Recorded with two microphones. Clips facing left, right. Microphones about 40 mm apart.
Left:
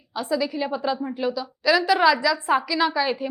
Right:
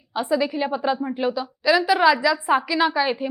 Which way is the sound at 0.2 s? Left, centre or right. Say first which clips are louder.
Right 3 dB; right.